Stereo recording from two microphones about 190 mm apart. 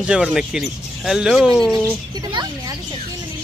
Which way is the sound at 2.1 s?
20° right (ahead or behind).